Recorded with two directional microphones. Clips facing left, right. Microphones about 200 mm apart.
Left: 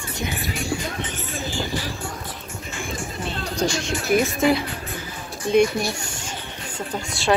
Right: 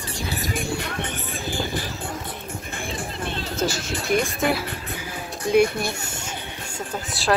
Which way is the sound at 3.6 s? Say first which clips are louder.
Left 2 dB; 5° right (ahead or behind).